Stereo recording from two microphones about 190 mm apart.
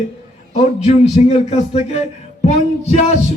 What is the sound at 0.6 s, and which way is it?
Speech, 35° left (ahead or behind).